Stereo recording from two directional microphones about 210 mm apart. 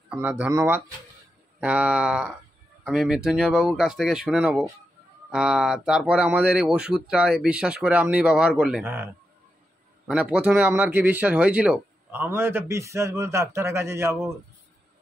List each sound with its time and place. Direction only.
0.1 s speech: 5° right (ahead or behind)